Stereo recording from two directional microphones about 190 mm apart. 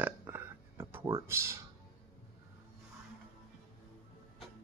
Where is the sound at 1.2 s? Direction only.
15° right (ahead or behind).